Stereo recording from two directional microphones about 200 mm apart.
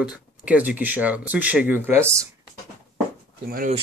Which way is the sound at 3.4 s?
45° right (ahead or behind).